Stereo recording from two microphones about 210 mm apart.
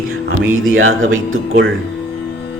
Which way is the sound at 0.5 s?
70° right (ahead or behind).